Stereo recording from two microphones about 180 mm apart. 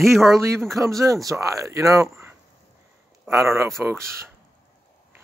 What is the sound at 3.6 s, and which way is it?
Speech, 15° right (ahead or behind).